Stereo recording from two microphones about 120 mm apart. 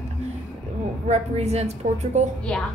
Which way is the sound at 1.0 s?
65° right (ahead or behind).